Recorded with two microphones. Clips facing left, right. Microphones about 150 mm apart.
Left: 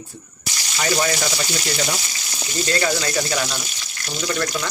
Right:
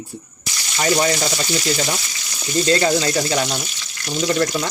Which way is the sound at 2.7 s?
30° right (ahead or behind).